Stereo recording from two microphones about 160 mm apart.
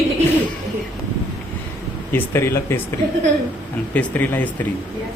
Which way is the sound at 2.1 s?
15° left (ahead or behind).